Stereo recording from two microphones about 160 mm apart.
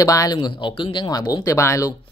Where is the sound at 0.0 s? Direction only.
20° left (ahead or behind).